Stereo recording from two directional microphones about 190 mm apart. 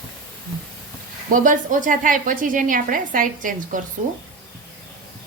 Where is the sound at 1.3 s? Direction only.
45° right (ahead or behind).